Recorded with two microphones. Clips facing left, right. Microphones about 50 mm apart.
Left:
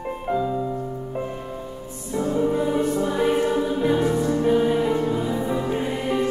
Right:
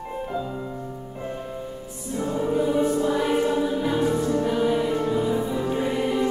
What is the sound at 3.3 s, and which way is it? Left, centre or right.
Music, centre.